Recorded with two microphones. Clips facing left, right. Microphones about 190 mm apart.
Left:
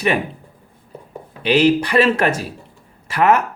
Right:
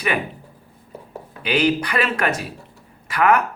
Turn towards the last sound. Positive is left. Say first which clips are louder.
# left 2 dB
turn(degrees=25)  # may be behind; listen again after turning